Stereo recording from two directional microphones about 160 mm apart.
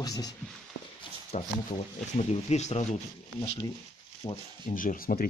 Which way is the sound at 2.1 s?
45° left (ahead or behind).